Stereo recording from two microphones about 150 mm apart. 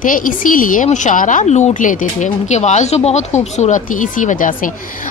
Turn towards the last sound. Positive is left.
turn(degrees=65)  # may be behind; listen again after turning